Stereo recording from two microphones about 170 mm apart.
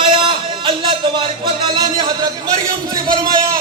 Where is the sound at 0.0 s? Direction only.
30° right (ahead or behind).